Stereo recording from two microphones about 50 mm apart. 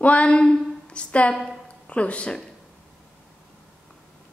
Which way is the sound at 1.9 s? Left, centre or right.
Left.